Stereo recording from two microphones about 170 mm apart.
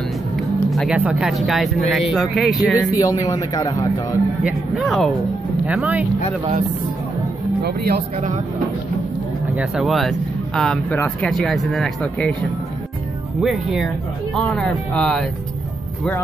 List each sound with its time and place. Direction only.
0.4 s speech: centre (ahead or behind)
3.0 s a man's voice: 20° left (ahead or behind)
4.4 s speech: 5° right (ahead or behind)
7.6 s speech: 70° right (ahead or behind)
9.6 s speech: centre (ahead or behind)
13.4 s speech: centre (ahead or behind)